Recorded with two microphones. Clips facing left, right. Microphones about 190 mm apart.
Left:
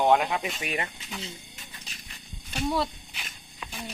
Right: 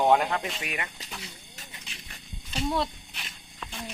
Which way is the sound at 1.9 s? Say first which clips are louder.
Right 1 dB; 40° left (ahead or behind).